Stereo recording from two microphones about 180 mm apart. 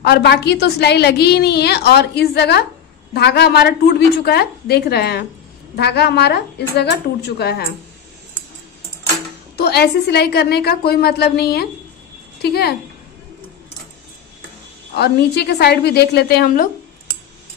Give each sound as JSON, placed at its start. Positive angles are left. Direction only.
{"t": 0.0, "sound": "a woman's voice", "side_deg": 70}
{"t": 9.6, "sound": "a woman's voice", "side_deg": 65}
{"t": 15.0, "sound": "a woman's voice", "side_deg": 65}